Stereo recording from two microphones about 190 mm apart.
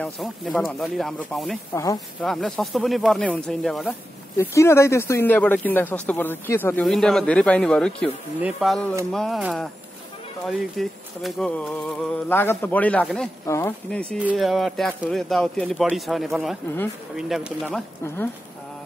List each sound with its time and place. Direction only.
0.0 s speech: centre (ahead or behind)
1.7 s speech: 15° left (ahead or behind)
2.2 s speech: 5° left (ahead or behind)
4.4 s speech: 15° left (ahead or behind)
14.2 s speech: 5° right (ahead or behind)
18.0 s speech: 10° left (ahead or behind)